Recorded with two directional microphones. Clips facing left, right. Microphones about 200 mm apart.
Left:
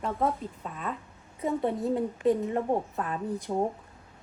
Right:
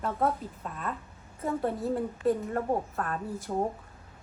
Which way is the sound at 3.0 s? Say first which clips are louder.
Left 2 dB; 5° left (ahead or behind).